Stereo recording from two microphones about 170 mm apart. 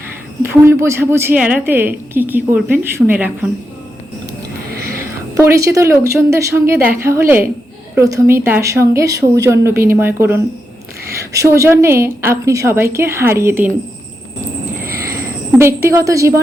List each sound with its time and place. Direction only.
0.4 s a woman's voice: 15° right (ahead or behind)
4.9 s a woman's voice: 15° right (ahead or behind)
15.1 s speech: 15° right (ahead or behind)